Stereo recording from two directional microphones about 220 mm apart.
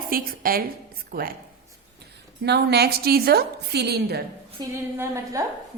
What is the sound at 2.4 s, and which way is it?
A woman's voice, 45° right (ahead or behind).